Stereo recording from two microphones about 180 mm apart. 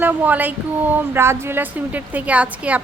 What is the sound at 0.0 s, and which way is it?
A woman's voice, 10° right (ahead or behind).